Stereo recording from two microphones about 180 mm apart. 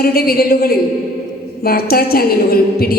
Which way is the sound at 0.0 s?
55° left (ahead or behind).